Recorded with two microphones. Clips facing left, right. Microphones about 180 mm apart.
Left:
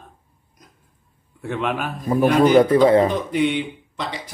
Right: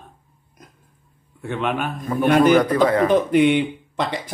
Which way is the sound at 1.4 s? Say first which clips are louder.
Right 1 dB; centre (ahead or behind).